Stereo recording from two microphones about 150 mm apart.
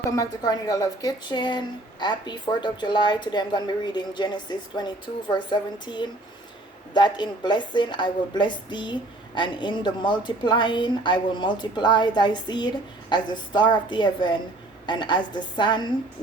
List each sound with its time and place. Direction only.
0.2 s a woman's voice: 25° left (ahead or behind)